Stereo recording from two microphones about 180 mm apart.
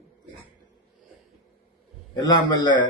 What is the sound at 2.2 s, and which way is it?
Speech, 25° left (ahead or behind).